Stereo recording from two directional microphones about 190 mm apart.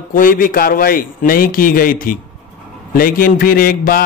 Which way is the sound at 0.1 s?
45° left (ahead or behind).